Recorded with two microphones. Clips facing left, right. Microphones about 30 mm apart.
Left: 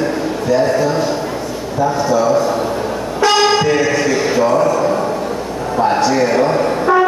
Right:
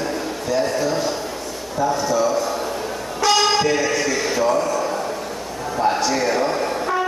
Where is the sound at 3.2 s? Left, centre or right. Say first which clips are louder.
Left 5 dB; centre.